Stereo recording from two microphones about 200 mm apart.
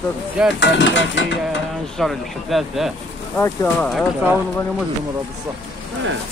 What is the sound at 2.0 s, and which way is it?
Speech, centre (ahead or behind).